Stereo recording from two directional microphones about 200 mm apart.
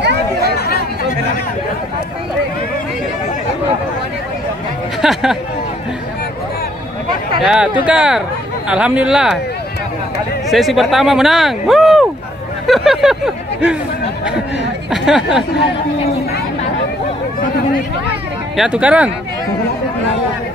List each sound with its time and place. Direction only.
0.4 s chatter: 50° left (ahead or behind)
5.0 s speech: centre (ahead or behind)
7.4 s speech: 5° right (ahead or behind)
10.5 s speech: centre (ahead or behind)
14.9 s speech: centre (ahead or behind)
18.6 s speech: 5° right (ahead or behind)